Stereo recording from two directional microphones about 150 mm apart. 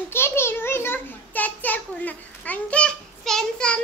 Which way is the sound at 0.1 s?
15° left (ahead or behind).